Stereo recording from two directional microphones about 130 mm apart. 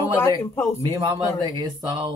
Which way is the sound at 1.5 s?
35° right (ahead or behind).